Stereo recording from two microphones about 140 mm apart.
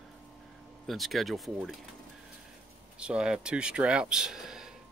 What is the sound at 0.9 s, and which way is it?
Speech, centre (ahead or behind).